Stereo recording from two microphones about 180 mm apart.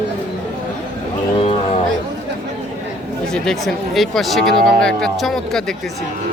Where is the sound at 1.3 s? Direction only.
30° left (ahead or behind).